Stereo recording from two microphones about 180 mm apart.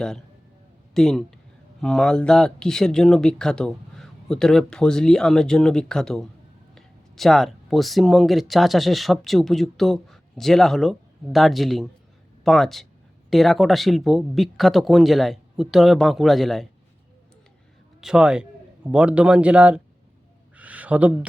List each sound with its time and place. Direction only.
0.9 s speech: 5° left (ahead or behind)
18.0 s speech: 5° right (ahead or behind)
20.6 s a sound: 10° right (ahead or behind)